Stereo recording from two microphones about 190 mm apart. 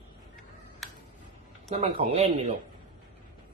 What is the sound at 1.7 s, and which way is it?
Speech, 35° right (ahead or behind).